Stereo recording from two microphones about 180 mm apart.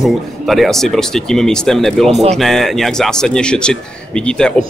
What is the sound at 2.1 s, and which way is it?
Speech, 40° right (ahead or behind).